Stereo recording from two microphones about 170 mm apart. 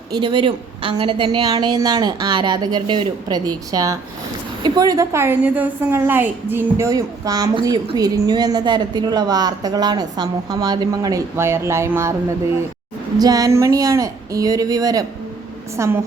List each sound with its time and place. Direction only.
0.1 s a woman's voice: 30° right (ahead or behind)
13.1 s a woman's voice: 20° right (ahead or behind)